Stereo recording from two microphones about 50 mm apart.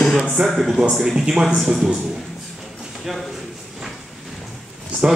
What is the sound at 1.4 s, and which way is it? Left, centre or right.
Speech, centre.